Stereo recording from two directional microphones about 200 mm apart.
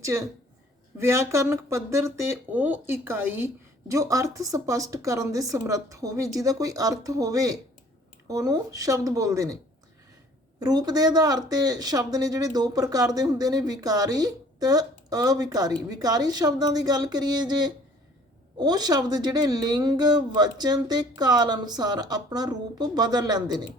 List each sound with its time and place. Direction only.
0.0 s a woman's voice: 15° right (ahead or behind)
10.6 s speech: 20° right (ahead or behind)